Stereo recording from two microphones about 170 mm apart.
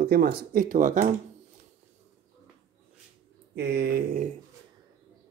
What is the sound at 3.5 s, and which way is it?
Speech, 70° right (ahead or behind).